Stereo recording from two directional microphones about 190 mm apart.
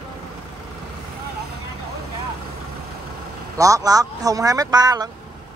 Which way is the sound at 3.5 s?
15° right (ahead or behind).